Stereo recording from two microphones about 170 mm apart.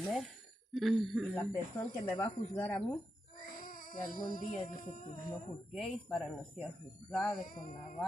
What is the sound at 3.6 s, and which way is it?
Music, 55° left (ahead or behind).